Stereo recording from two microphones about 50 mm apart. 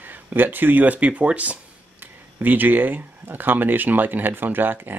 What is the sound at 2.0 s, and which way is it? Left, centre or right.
Speech, right.